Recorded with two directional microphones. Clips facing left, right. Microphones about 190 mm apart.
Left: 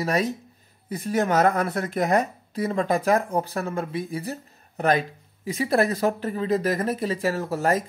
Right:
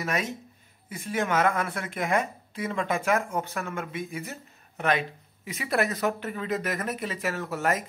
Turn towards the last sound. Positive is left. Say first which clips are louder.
# left 4 dB
turn(degrees=35)  # may be behind; listen again after turning